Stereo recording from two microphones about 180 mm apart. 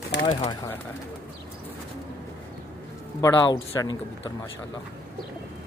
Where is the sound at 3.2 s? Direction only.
20° left (ahead or behind).